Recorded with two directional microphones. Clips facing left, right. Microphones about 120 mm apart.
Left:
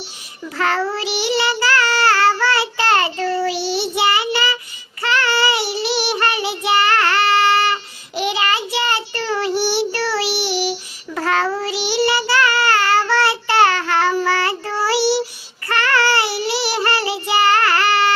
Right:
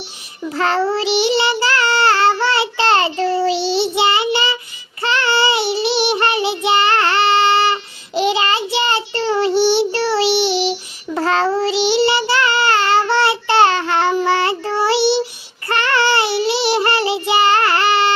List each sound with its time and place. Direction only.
0.5 s child singing: 30° right (ahead or behind)